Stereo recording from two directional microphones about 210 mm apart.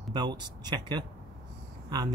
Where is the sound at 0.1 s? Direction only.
20° right (ahead or behind).